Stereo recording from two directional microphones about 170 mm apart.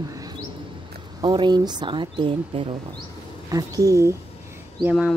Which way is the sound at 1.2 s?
25° right (ahead or behind).